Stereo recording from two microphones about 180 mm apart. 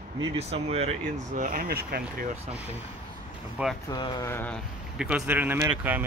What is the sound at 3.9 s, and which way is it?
Speech, 20° left (ahead or behind).